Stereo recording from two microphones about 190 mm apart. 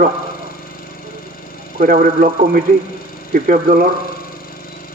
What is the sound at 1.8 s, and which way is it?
Speech, 40° right (ahead or behind).